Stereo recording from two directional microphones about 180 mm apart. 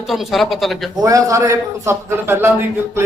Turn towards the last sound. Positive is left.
turn(degrees=-15)  # may be behind; listen again after turning